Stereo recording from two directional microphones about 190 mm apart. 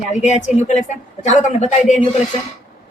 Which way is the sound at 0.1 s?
40° left (ahead or behind).